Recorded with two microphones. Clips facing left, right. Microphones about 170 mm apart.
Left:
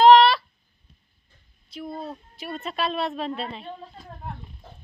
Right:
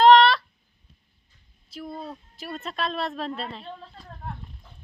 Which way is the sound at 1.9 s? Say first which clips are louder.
Left 2 dB; 25° left (ahead or behind).